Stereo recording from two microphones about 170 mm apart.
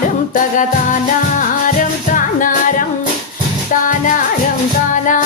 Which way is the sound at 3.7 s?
50° left (ahead or behind).